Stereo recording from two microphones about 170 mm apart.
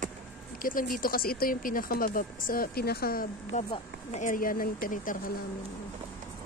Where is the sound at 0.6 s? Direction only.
55° left (ahead or behind).